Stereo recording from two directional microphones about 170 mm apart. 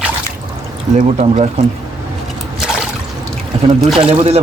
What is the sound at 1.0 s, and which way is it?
Speech, 40° right (ahead or behind).